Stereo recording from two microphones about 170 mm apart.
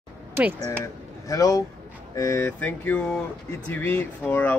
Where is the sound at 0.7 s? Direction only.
20° left (ahead or behind).